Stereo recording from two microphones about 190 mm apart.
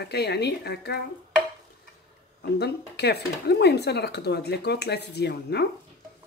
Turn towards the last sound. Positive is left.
turn(degrees=60)  # may be behind; listen again after turning